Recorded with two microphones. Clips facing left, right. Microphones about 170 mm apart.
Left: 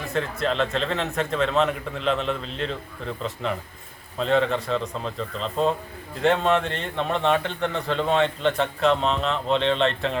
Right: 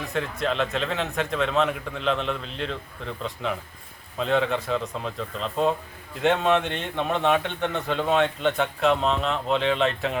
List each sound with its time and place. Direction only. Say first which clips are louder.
0.0 s a man's voice: left 1 dB; centre (ahead or behind)